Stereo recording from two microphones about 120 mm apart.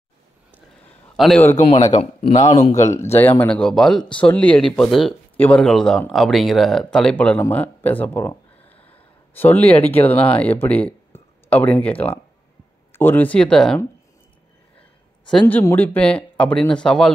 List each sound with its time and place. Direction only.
1.1 s a man's voice: centre (ahead or behind)
1.5 s a man's voice: 65° left (ahead or behind)
2.3 s speech: 85° left
2.7 s speech: 25° left (ahead or behind)
3.4 s speech: 5° left (ahead or behind)
8.8 s a sound: 15° left (ahead or behind)
9.9 s speech: 15° left (ahead or behind)
14.8 s a sound: 10° left (ahead or behind)
15.7 s speech: 15° left (ahead or behind)